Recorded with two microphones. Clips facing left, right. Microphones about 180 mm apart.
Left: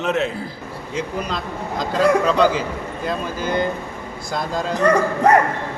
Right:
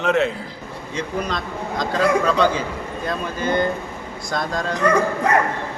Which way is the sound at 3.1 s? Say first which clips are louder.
Right 1 dB; 10° left (ahead or behind).